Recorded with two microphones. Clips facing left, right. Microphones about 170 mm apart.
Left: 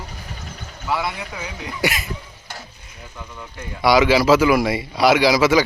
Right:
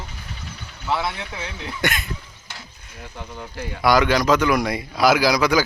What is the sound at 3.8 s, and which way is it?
Speech, 5° left (ahead or behind).